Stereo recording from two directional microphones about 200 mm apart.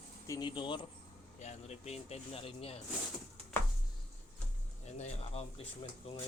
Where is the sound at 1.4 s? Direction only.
35° left (ahead or behind).